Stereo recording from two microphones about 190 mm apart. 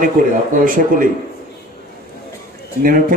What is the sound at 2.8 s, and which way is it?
Speech, 45° right (ahead or behind).